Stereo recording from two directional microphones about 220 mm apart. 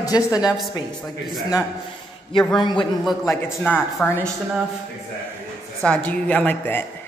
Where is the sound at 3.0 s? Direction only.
Centre (ahead or behind).